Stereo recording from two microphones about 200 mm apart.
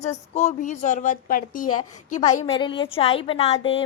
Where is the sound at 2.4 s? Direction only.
25° left (ahead or behind).